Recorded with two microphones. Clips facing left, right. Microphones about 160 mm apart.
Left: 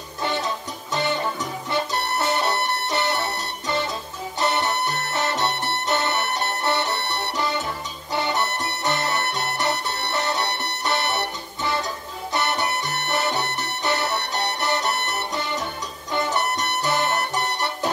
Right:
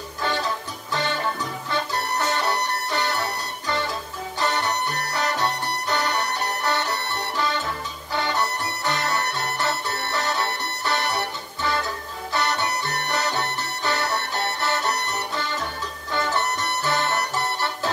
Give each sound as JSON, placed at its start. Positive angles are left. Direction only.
{"t": 0.2, "sound": "music", "side_deg": 20}